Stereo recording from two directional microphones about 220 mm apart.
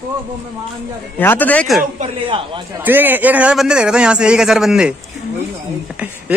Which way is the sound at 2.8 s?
10° right (ahead or behind).